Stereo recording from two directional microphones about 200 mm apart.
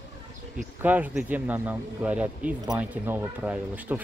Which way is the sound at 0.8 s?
10° right (ahead or behind).